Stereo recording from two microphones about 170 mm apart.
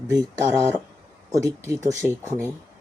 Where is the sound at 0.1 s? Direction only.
20° right (ahead or behind).